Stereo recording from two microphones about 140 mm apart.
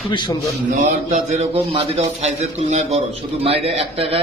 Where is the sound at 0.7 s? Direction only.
55° right (ahead or behind).